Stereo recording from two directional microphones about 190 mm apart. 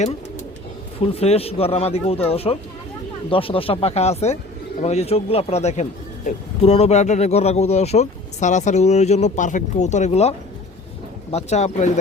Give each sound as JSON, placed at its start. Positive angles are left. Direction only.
{"t": 1.1, "sound": "speech", "side_deg": 30}